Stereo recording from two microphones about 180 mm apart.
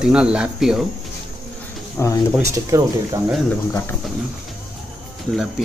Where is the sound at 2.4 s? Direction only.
15° right (ahead or behind).